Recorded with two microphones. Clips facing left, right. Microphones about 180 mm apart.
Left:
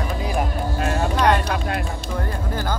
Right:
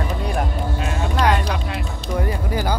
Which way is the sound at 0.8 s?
45° left (ahead or behind).